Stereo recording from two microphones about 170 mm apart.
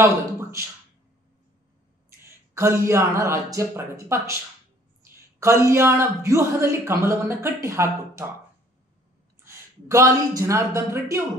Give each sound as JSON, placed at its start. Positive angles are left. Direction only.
{"t": 0.0, "sound": "speech", "side_deg": -15}
{"t": 2.2, "sound": "speech", "side_deg": -15}
{"t": 9.4, "sound": "speech", "side_deg": -15}